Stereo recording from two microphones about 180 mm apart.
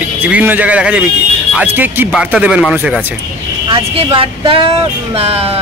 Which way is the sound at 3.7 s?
30° right (ahead or behind).